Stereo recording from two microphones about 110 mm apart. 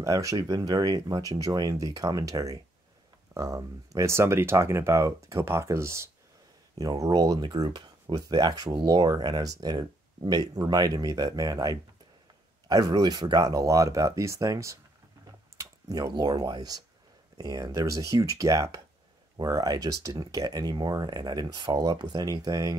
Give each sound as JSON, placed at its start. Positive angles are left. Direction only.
{"t": 0.0, "sound": "speech", "side_deg": -30}
{"t": 6.8, "sound": "speech", "side_deg": -35}